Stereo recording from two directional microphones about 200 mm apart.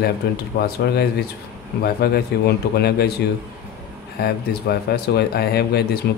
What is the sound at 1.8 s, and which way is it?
Speech, 50° left (ahead or behind).